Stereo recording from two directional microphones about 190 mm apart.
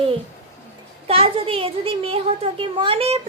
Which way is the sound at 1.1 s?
30° right (ahead or behind).